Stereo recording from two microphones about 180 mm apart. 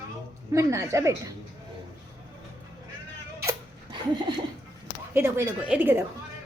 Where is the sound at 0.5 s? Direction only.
15° right (ahead or behind).